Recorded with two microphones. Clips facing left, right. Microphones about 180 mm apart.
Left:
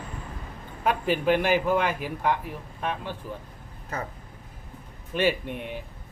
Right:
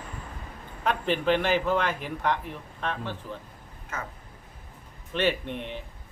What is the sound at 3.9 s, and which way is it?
Speech, 35° left (ahead or behind).